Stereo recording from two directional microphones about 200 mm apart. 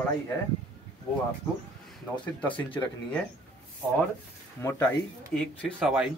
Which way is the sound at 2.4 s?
5° left (ahead or behind).